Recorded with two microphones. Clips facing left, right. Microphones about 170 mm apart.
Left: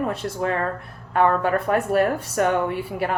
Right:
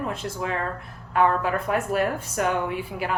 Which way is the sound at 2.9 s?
50° left (ahead or behind).